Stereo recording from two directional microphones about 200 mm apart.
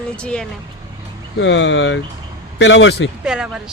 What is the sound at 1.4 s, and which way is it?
Speech, 65° left (ahead or behind).